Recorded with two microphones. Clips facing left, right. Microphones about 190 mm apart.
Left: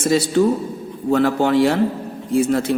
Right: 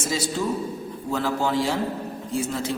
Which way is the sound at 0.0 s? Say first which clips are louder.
Left 10 dB; 65° left (ahead or behind).